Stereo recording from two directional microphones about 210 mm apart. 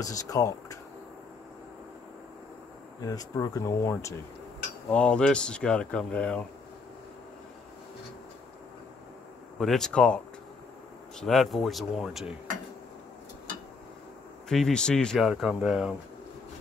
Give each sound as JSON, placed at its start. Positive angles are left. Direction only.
{"t": 0.0, "sound": "speech", "side_deg": 15}
{"t": 3.0, "sound": "speech", "side_deg": 15}
{"t": 9.6, "sound": "speech", "side_deg": 0}
{"t": 14.5, "sound": "speech", "side_deg": 5}